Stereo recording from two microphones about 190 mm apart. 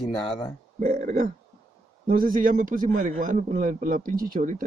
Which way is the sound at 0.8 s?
40° right (ahead or behind).